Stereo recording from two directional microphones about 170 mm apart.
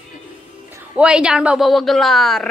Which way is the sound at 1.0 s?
5° right (ahead or behind).